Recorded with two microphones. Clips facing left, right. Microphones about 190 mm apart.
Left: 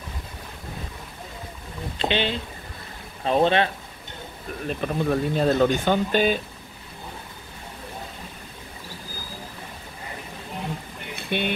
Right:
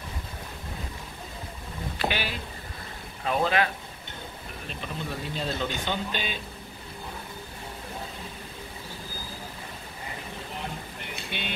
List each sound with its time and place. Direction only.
2.0 s speech: 25° left (ahead or behind)
4.6 s speech: 55° left (ahead or behind)
11.1 s vehicle: 55° left (ahead or behind)